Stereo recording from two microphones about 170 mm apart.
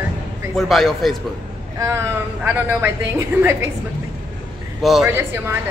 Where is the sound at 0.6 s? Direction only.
Centre (ahead or behind).